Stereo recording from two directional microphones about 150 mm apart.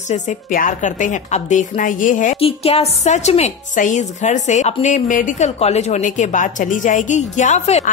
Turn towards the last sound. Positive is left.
turn(degrees=50)  # may be behind; listen again after turning